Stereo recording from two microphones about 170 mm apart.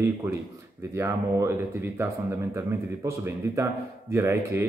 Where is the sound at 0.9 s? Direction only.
15° right (ahead or behind).